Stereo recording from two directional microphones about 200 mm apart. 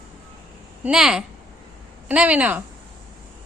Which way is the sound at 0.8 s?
5° right (ahead or behind).